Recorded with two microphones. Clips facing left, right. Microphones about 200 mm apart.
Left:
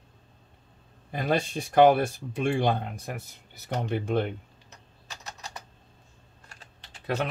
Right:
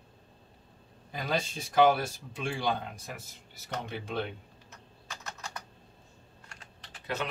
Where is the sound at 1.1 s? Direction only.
55° left (ahead or behind).